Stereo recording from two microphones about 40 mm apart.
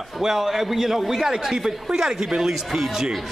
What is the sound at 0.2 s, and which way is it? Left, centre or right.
Speech, centre.